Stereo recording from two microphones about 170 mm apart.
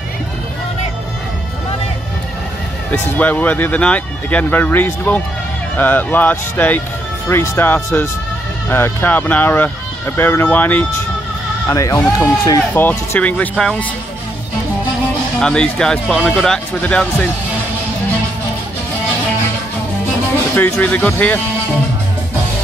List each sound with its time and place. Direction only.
2.9 s speech: 10° left (ahead or behind)
15.4 s speech: 5° left (ahead or behind)
20.5 s speech: 10° left (ahead or behind)